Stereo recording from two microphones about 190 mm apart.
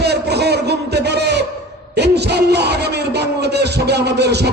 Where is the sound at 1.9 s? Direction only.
60° right (ahead or behind).